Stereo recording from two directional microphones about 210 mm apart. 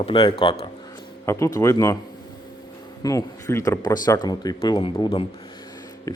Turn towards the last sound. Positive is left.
turn(degrees=15)  # may be behind; listen again after turning